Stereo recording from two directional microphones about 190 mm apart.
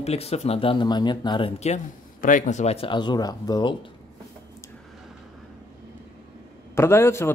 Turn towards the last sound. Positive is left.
turn(degrees=15)  # may be behind; listen again after turning